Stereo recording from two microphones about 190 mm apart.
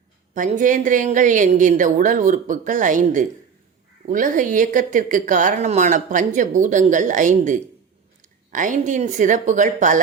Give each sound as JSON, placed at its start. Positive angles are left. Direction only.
{"t": 0.3, "sound": "speech", "side_deg": -40}